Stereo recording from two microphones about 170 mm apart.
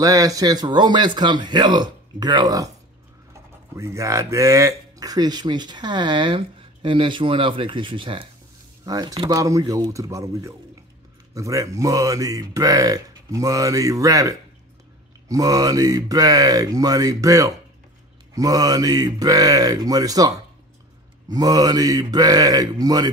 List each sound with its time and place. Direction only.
0.0 s speech: 20° right (ahead or behind)
3.7 s speech: 15° right (ahead or behind)